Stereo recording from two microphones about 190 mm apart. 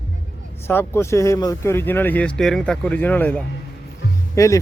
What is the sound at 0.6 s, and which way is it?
Speech, 10° left (ahead or behind).